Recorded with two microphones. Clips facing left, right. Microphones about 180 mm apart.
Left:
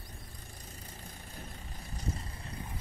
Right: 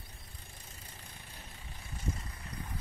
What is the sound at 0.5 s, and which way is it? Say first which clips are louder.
Vehicle: left 4 dB; 40° left (ahead or behind).